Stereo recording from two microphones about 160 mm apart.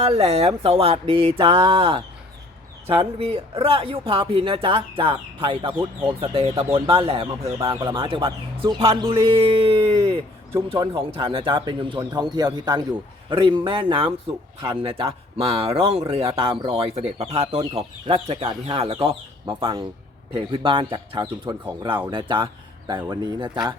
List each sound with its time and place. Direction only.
0.0 s speech: 40° right (ahead or behind)
3.0 s speech: 40° right (ahead or behind)